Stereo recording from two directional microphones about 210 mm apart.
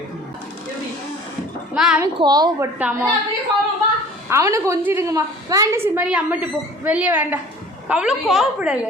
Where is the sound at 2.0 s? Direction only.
20° right (ahead or behind).